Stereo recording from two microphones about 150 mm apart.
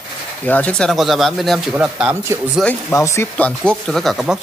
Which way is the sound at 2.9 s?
20° left (ahead or behind).